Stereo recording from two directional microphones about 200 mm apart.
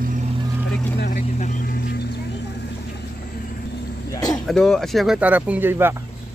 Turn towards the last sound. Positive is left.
turn(degrees=-10)  # may be behind; listen again after turning